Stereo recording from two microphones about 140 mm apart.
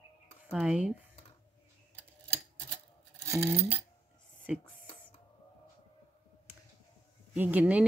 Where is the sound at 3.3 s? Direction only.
20° right (ahead or behind).